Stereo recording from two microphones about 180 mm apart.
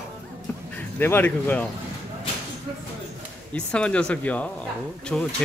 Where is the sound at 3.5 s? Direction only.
5° left (ahead or behind).